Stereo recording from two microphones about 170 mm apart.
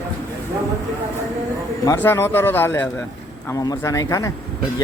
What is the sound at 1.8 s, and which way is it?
A man's voice, 15° left (ahead or behind).